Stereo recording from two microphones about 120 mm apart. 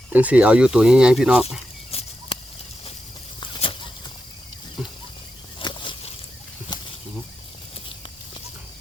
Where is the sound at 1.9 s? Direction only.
55° left (ahead or behind).